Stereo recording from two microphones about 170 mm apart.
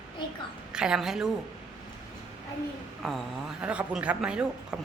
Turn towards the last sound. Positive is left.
turn(degrees=-5)  # may be behind; listen again after turning